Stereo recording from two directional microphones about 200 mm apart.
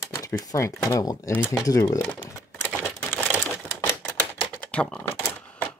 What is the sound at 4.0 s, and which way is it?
Typewriter, 5° left (ahead or behind).